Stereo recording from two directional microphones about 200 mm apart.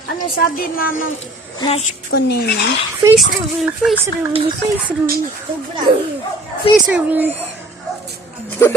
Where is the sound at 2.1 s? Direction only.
55° left (ahead or behind).